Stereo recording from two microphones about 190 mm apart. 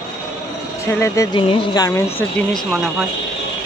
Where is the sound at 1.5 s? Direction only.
25° left (ahead or behind).